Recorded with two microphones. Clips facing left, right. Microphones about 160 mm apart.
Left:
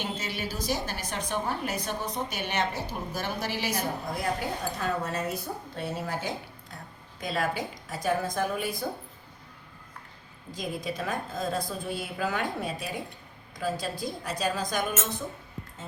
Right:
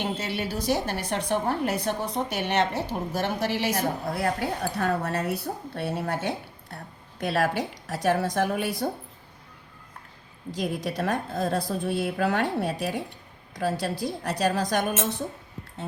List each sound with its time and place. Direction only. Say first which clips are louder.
0.0 s a woman's voice: right 4 dB; 65° right (ahead or behind)
10.5 s a woman's voice: right 4 dB; 75° right (ahead or behind)